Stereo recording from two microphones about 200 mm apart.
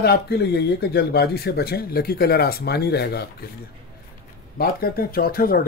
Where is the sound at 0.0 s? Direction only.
55° left (ahead or behind).